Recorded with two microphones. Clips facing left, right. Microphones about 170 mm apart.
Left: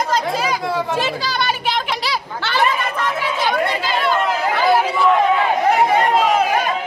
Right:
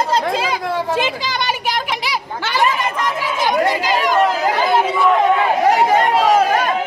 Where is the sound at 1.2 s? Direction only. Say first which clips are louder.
Even; 15° right (ahead or behind).